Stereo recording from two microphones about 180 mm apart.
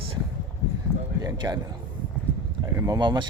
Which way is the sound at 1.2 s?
25° right (ahead or behind).